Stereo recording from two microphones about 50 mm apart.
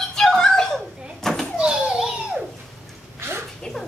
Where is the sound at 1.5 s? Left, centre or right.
Centre.